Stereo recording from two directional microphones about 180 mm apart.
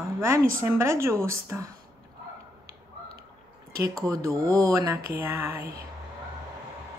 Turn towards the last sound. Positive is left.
turn(degrees=-15)  # may be behind; listen again after turning